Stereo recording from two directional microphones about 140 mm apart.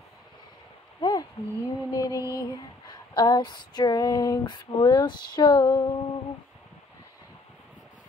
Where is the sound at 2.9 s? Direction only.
30° left (ahead or behind).